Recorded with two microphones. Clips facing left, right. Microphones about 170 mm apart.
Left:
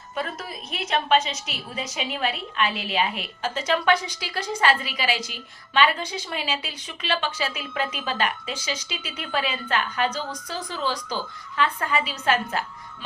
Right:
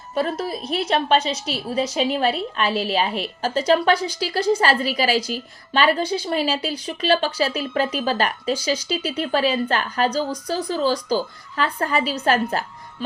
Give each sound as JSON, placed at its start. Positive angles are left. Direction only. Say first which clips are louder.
{"t": 0.1, "sound": "a woman's voice", "louder": "right 8 dB", "side_deg": -35}